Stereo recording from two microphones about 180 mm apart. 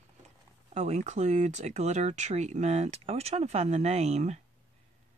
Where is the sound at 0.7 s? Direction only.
40° right (ahead or behind).